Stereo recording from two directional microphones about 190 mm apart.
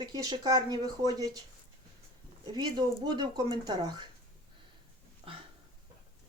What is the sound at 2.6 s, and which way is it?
Speech, 20° right (ahead or behind).